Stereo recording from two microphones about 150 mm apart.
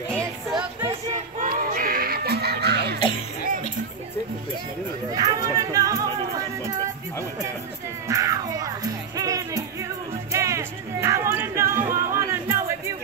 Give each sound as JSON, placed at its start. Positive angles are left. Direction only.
{"t": 1.4, "sound": "a sound", "side_deg": -65}
{"t": 5.1, "sound": "chatter", "side_deg": -25}
{"t": 6.6, "sound": "music", "side_deg": -20}
{"t": 8.1, "sound": "music", "side_deg": -20}